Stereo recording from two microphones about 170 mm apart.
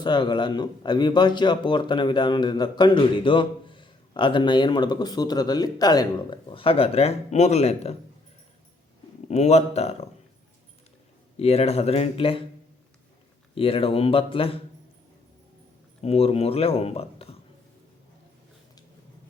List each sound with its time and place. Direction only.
0.0 s a man's voice: 25° left (ahead or behind)
9.3 s speech: 40° left (ahead or behind)
11.3 s speech: 35° left (ahead or behind)
13.6 s speech: 35° left (ahead or behind)
16.0 s speech: 35° left (ahead or behind)